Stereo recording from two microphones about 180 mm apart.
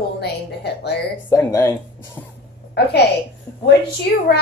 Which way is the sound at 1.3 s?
15° left (ahead or behind).